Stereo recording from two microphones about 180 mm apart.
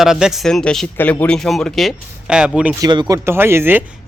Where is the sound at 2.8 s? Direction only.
20° right (ahead or behind).